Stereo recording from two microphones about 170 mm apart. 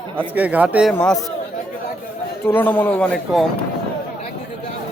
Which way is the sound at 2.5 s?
10° left (ahead or behind).